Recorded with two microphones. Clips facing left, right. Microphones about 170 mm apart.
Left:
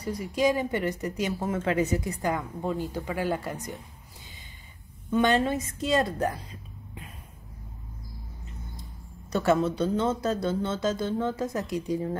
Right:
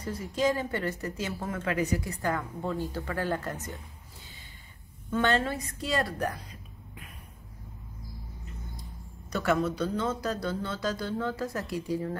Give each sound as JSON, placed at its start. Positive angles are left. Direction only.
{"t": 0.0, "sound": "speech", "side_deg": 15}
{"t": 5.1, "sound": "speech", "side_deg": 15}
{"t": 9.3, "sound": "speech", "side_deg": 25}